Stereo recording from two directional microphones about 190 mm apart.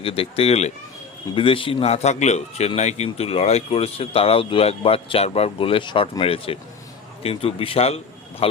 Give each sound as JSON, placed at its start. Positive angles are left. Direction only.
{"t": 0.0, "sound": "a man's voice", "side_deg": 30}